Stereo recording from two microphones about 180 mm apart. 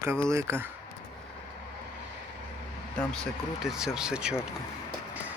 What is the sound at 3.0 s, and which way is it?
Speech, centre (ahead or behind).